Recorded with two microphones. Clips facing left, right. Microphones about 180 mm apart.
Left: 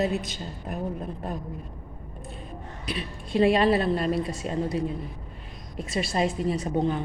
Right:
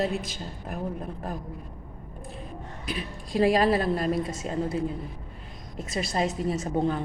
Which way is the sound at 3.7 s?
30° left (ahead or behind).